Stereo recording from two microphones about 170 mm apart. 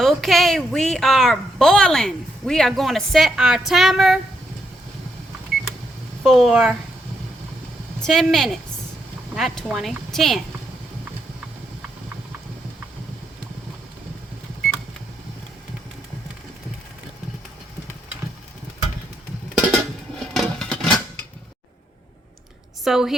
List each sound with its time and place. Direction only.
0.0 s speech: centre (ahead or behind)
6.2 s speech: centre (ahead or behind)
8.0 s speech: centre (ahead or behind)
19.5 s dishes: centre (ahead or behind)
22.8 s a woman's voice: centre (ahead or behind)